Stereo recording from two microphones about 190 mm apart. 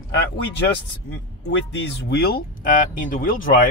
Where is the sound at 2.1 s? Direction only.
55° left (ahead or behind).